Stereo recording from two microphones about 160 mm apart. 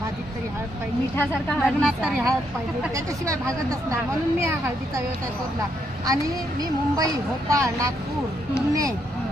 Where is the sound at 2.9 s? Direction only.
20° right (ahead or behind).